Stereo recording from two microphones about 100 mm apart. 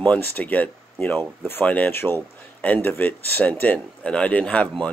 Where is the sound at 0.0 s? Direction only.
15° left (ahead or behind).